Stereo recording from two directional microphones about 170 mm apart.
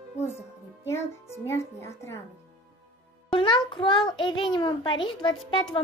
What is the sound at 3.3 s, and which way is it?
A child's voice, 30° left (ahead or behind).